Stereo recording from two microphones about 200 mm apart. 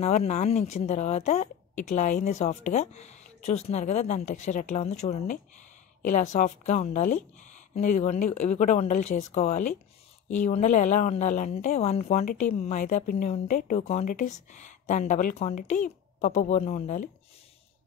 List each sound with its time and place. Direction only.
0.0 s a woman's voice: 35° left (ahead or behind)